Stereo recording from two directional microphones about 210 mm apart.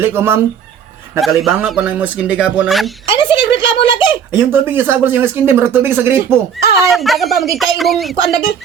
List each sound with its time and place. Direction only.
0.0 s speech: 10° right (ahead or behind)
3.1 s a sound: 25° left (ahead or behind)
4.4 s speech: 10° right (ahead or behind)
6.7 s speech: centre (ahead or behind)